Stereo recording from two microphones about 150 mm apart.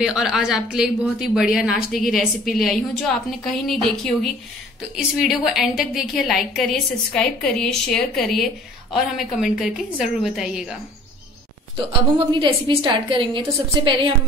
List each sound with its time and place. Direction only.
0.0 s a woman's voice: 5° right (ahead or behind)
12.4 s a woman's voice: 30° right (ahead or behind)